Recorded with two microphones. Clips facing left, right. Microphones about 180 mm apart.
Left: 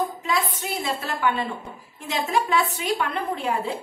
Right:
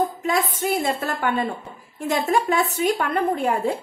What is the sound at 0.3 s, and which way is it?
A woman's voice, 50° right (ahead or behind).